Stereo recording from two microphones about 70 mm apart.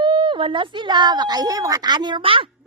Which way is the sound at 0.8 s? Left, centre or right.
Right.